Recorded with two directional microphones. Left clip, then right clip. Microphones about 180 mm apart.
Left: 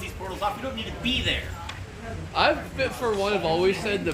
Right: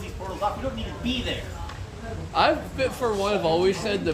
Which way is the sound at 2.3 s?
65° right (ahead or behind).